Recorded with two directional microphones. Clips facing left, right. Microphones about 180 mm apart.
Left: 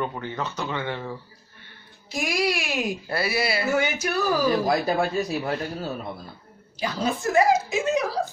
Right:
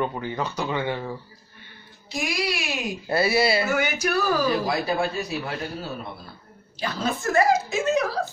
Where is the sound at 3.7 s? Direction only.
25° left (ahead or behind).